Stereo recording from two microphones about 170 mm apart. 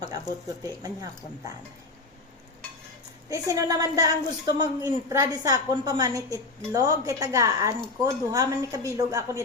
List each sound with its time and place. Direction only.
0.0 s speech: 20° right (ahead or behind)
3.2 s a woman's voice: 20° right (ahead or behind)